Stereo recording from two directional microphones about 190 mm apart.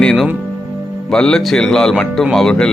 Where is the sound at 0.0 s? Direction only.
5° left (ahead or behind).